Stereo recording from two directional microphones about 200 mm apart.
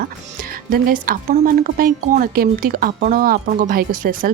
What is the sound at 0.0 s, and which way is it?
Speech, 45° right (ahead or behind).